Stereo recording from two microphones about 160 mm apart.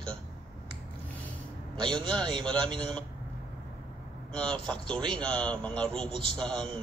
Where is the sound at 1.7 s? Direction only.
30° right (ahead or behind).